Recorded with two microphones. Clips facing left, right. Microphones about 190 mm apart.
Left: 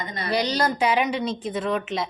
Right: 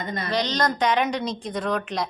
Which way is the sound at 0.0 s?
50° right (ahead or behind).